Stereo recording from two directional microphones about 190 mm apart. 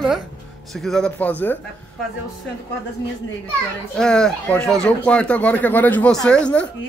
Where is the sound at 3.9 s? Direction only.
5° left (ahead or behind).